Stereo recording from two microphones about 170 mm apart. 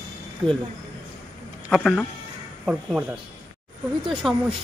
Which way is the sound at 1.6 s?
Centre (ahead or behind).